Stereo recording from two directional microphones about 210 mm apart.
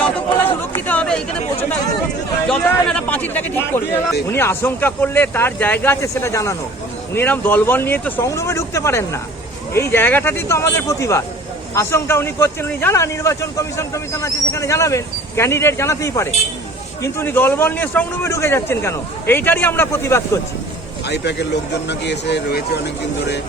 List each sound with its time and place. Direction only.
0.9 s chatter: 5° left (ahead or behind)
2.5 s a sound: 5° left (ahead or behind)
4.3 s a man's voice: 10° left (ahead or behind)
21.1 s speech: 55° left (ahead or behind)